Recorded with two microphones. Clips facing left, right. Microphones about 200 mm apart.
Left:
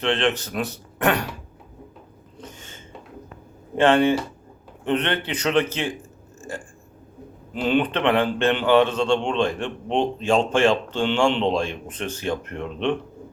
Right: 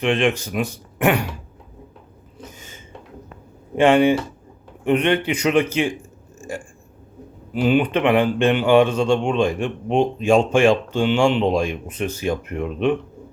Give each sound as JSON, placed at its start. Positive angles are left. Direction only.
{"t": 0.0, "sound": "speech", "side_deg": -10}
{"t": 2.4, "sound": "a sound", "side_deg": -10}
{"t": 3.8, "sound": "speech", "side_deg": -10}